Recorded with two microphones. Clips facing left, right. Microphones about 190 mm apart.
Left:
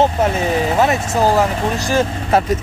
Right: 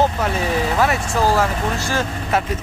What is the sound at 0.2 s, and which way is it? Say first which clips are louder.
Speech: left 4 dB; 25° left (ahead or behind).